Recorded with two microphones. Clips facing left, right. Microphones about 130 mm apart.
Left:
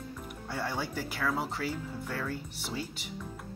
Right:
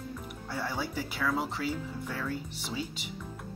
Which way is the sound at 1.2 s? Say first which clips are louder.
Right 1 dB; 5° left (ahead or behind).